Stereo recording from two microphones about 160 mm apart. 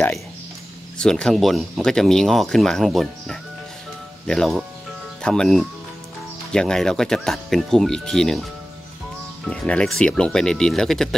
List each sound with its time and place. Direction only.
0.9 s speech: 5° left (ahead or behind)
9.5 s speech: 5° left (ahead or behind)